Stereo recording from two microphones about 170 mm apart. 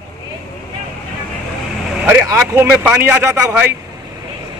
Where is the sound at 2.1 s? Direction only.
10° right (ahead or behind).